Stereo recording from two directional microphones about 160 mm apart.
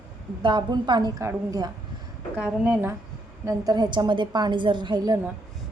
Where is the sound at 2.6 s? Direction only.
10° right (ahead or behind).